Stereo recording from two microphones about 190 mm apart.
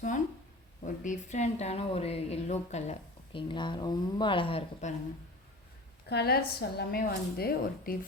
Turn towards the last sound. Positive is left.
turn(degrees=55)  # may be behind; listen again after turning